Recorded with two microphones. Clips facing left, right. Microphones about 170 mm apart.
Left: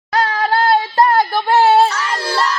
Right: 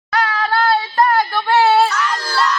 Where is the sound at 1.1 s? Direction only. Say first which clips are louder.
Left 2 dB; 30° left (ahead or behind).